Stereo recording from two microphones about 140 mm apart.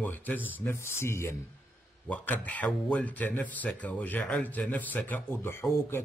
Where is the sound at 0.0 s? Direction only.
10° left (ahead or behind).